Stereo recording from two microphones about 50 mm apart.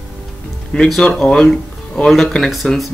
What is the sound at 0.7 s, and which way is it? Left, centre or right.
Speech, centre.